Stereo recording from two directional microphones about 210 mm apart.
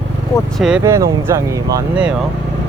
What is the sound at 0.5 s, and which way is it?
Speech, centre (ahead or behind).